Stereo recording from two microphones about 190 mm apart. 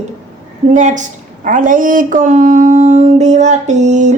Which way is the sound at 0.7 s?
40° right (ahead or behind).